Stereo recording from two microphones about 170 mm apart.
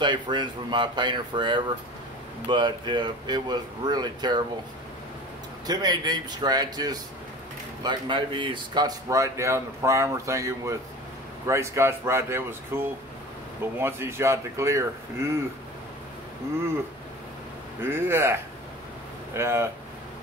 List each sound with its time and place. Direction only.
0.0 s speech: 25° right (ahead or behind)
5.7 s speech: 25° right (ahead or behind)
17.8 s speech: 15° right (ahead or behind)